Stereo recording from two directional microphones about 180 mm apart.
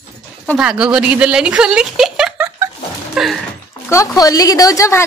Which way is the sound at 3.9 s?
15° left (ahead or behind).